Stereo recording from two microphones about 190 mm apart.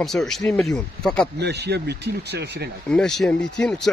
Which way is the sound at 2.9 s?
5° left (ahead or behind).